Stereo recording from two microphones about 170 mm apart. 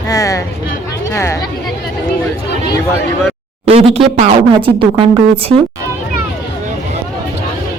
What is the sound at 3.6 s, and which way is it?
Speech, 35° right (ahead or behind).